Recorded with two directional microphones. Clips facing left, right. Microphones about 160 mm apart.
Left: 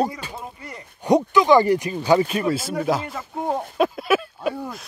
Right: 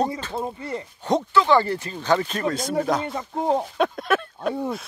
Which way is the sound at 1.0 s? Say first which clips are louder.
Left 4 dB; 15° left (ahead or behind).